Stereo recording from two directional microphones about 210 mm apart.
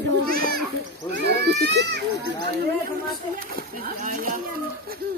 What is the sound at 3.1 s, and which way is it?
Speech, 45° right (ahead or behind).